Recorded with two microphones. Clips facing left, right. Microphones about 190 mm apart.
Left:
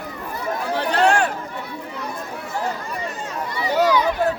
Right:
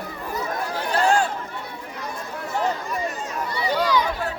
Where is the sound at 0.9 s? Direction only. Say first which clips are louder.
Left 2 dB; 70° left (ahead or behind).